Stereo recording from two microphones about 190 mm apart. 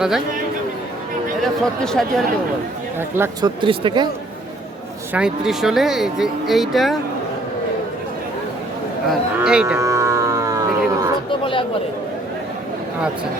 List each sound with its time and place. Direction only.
1.6 s speech: 5° left (ahead or behind)
3.4 s speech: 25° right (ahead or behind)
5.1 s speech: 5° right (ahead or behind)
9.0 s speech: 5° right (ahead or behind)
9.8 s music: 15° right (ahead or behind)
11.3 s a sound: 25° left (ahead or behind)